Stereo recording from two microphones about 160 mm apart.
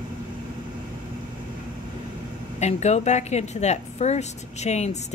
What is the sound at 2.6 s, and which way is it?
A woman's voice, 45° left (ahead or behind).